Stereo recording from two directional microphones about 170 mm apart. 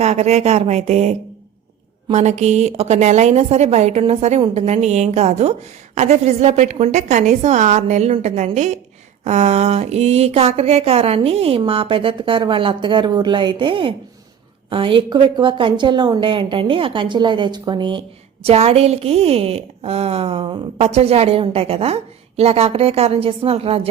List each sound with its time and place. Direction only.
0.0 s a woman's voice: 40° right (ahead or behind)
18.4 s a woman's voice: 35° right (ahead or behind)